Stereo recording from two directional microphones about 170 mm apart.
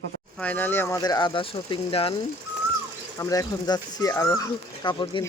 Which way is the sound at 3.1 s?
20° left (ahead or behind).